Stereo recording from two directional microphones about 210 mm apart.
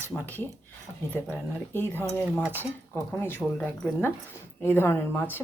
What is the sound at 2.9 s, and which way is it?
Speech, 10° left (ahead or behind).